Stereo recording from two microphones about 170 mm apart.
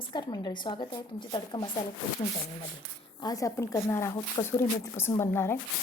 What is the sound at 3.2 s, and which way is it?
A woman's voice, 20° left (ahead or behind).